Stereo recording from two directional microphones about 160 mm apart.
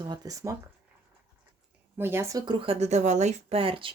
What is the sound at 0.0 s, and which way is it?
Speech, 25° right (ahead or behind).